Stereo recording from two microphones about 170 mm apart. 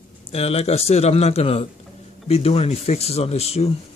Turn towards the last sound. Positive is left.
turn(degrees=35)  # may be behind; listen again after turning